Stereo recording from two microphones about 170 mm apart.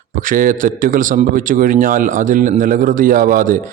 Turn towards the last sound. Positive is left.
turn(degrees=-50)  # may be behind; listen again after turning